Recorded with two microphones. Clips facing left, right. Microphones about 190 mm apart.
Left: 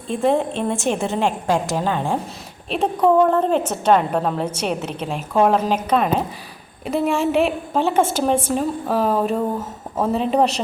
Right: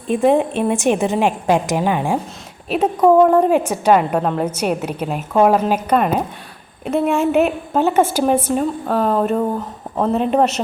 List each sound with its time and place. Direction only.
0.1 s a woman's voice: 15° right (ahead or behind)
8.9 s a sound: 5° left (ahead or behind)
10.0 s a woman's voice: centre (ahead or behind)